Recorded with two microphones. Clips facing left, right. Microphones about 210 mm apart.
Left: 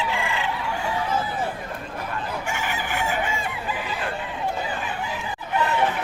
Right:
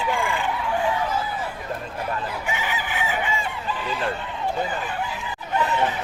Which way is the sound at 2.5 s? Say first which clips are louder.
Even; 50° left (ahead or behind).